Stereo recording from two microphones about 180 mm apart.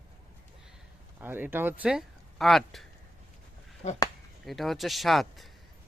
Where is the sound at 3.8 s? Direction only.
40° left (ahead or behind).